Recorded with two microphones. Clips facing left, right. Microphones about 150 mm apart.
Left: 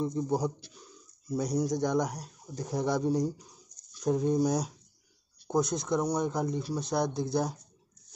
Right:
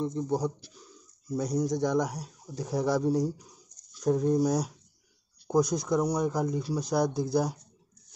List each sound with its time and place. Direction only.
0.0 s speech: 5° left (ahead or behind)